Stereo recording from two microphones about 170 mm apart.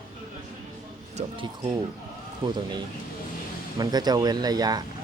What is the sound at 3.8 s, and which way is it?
Speech, 25° right (ahead or behind).